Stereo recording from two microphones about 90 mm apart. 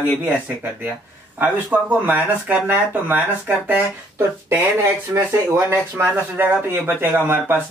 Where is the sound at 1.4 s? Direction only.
20° right (ahead or behind).